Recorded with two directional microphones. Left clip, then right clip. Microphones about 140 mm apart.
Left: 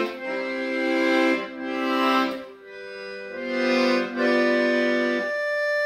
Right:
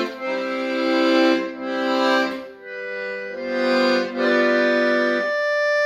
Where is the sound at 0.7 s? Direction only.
5° left (ahead or behind).